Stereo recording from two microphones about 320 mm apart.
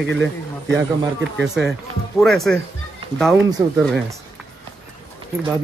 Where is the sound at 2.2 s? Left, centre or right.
Centre.